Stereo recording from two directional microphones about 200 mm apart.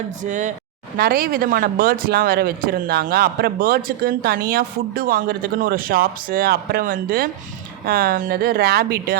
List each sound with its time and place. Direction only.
0.2 s speech: 40° right (ahead or behind)
0.9 s speech: 50° right (ahead or behind)